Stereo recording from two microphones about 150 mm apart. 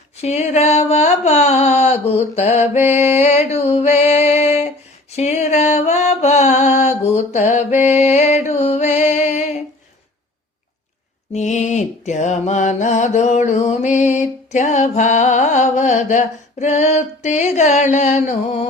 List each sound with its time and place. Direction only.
0.2 s mantra: 50° left (ahead or behind)
3.2 s a sound: 45° left (ahead or behind)
5.1 s music: 50° left (ahead or behind)
11.3 s mantra: 50° left (ahead or behind)